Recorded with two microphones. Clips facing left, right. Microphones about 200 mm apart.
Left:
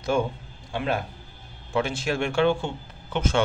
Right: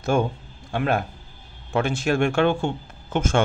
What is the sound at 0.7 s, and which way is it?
Speech, 55° right (ahead or behind).